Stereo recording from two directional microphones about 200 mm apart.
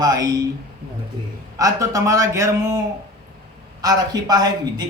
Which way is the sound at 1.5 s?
15° right (ahead or behind).